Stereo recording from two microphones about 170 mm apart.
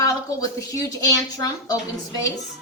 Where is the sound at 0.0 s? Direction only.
20° left (ahead or behind).